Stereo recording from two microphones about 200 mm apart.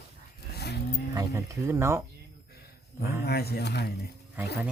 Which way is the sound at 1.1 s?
15° right (ahead or behind).